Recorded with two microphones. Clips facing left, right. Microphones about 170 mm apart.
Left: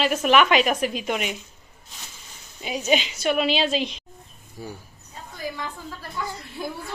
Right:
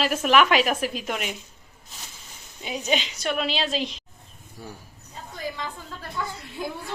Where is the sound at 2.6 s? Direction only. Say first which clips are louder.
Left 3 dB; 5° left (ahead or behind).